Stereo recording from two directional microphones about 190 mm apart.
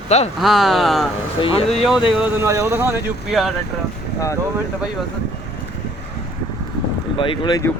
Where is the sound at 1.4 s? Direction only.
30° left (ahead or behind).